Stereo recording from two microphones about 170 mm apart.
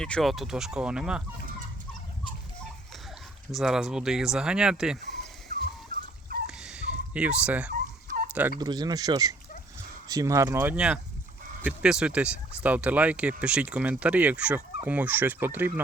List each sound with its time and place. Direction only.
0.0 s speech: centre (ahead or behind)
3.5 s speech: 5° right (ahead or behind)
5.5 s dog: 60° right (ahead or behind)
6.5 s a sound: 5° right (ahead or behind)
7.7 s turkey: 55° right (ahead or behind)
8.3 s turkey: 10° right (ahead or behind)
8.5 s speech: 25° right (ahead or behind)